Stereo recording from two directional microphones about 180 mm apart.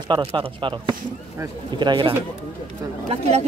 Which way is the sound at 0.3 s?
30° right (ahead or behind).